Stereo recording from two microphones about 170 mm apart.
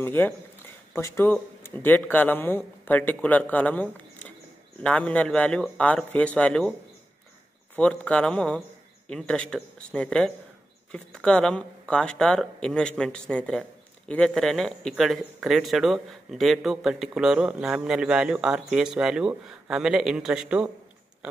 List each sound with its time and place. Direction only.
0.0 s speech: 10° left (ahead or behind)
7.7 s a man's voice: 5° left (ahead or behind)